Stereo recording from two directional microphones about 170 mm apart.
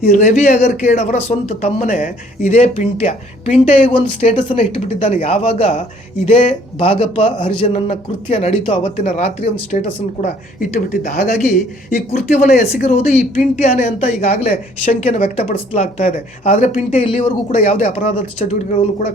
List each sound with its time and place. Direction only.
0.0 s a man's voice: 50° left (ahead or behind)
10.2 s speech: 55° left (ahead or behind)
11.3 s a man's voice: 45° left (ahead or behind)
12.6 s a man's voice: 40° left (ahead or behind)